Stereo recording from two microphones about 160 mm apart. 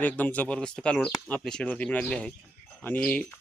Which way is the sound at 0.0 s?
10° left (ahead or behind).